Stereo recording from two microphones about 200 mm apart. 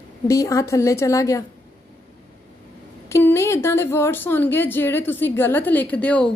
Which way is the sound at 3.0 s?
15° left (ahead or behind).